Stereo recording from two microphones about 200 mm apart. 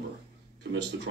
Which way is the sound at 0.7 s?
60° right (ahead or behind).